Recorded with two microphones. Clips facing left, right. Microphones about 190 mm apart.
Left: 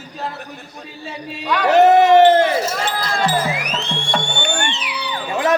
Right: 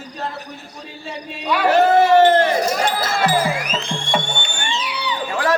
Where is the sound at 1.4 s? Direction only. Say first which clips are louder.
Even; 10° right (ahead or behind).